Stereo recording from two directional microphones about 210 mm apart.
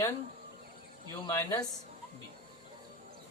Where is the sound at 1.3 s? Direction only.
15° left (ahead or behind).